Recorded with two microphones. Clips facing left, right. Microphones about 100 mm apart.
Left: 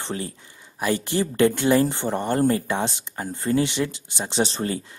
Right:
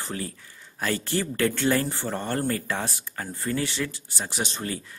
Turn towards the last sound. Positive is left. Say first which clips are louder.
# left 7 dB
turn(degrees=30)  # may be behind; listen again after turning